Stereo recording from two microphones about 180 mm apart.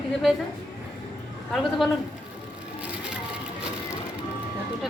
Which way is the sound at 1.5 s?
Centre (ahead or behind).